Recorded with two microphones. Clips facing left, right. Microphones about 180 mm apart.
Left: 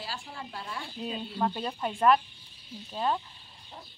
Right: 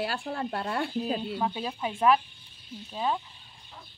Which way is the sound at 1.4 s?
Centre (ahead or behind).